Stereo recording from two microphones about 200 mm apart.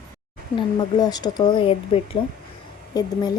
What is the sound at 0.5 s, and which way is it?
A woman's voice, 20° left (ahead or behind).